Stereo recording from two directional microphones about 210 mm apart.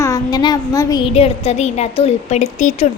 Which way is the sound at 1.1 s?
30° left (ahead or behind).